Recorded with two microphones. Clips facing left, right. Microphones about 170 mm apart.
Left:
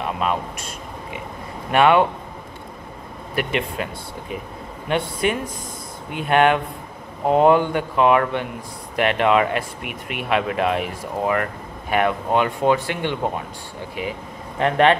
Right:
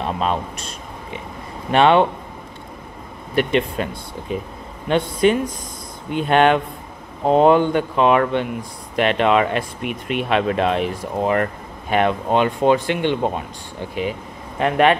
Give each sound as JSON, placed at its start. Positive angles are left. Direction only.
{"t": 0.0, "sound": "speech", "side_deg": -30}
{"t": 1.7, "sound": "speech", "side_deg": -25}
{"t": 3.3, "sound": "speech", "side_deg": -30}